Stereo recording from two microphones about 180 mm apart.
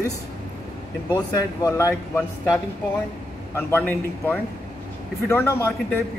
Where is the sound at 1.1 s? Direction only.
20° left (ahead or behind).